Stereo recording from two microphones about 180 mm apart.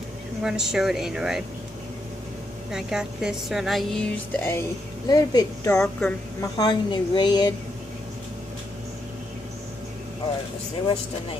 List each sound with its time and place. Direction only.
0.4 s a woman's voice: centre (ahead or behind)
2.7 s a woman's voice: 5° right (ahead or behind); by 5.8 s 20° left (ahead or behind)
5.8 s speech: 5° left (ahead or behind)
6.6 s a woman's voice: 25° left (ahead or behind)